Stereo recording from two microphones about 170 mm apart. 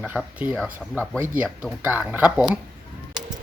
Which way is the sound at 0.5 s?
5° left (ahead or behind).